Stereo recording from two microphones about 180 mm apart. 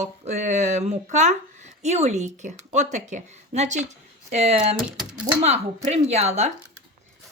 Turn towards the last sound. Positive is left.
turn(degrees=-35)  # may be behind; listen again after turning